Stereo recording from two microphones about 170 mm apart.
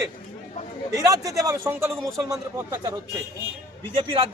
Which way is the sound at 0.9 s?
20° right (ahead or behind).